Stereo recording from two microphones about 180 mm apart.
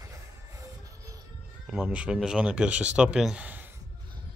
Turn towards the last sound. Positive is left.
turn(degrees=-10)  # may be behind; listen again after turning